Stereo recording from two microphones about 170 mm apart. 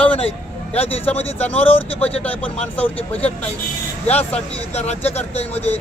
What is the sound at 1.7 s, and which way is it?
Speech, 35° left (ahead or behind).